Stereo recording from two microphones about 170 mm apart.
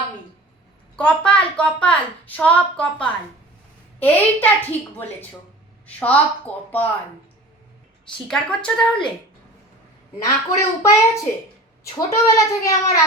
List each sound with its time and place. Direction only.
0.9 s a woman's voice: 5° left (ahead or behind)
8.3 s speech: 5° left (ahead or behind)
10.2 s a child's voice: 20° left (ahead or behind)